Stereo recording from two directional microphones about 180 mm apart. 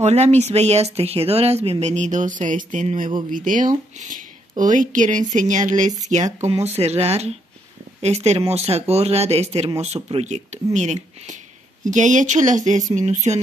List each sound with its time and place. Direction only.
0.0 s speech: 40° right (ahead or behind)